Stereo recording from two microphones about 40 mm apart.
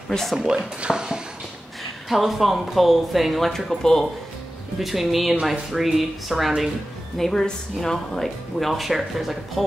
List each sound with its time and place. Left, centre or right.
0.4 s speech: centre
2.0 s speech: centre
4.7 s speech: centre
7.2 s speech: centre